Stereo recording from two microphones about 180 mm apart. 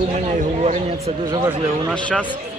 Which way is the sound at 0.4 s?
40° right (ahead or behind).